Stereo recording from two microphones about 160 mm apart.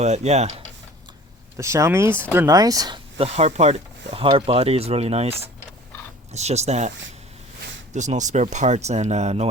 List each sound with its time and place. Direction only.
0.0 s speech: 45° right (ahead or behind)
1.5 s speech: 20° right (ahead or behind)
3.2 s speech: 40° right (ahead or behind)
6.3 s speech: 45° right (ahead or behind)
7.9 s speech: 50° right (ahead or behind)